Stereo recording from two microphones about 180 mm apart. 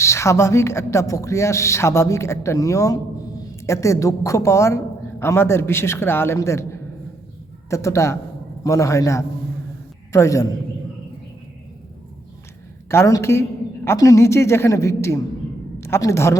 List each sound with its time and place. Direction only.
0.0 s a man's voice: 15° left (ahead or behind)
12.9 s a woman's voice: 15° left (ahead or behind)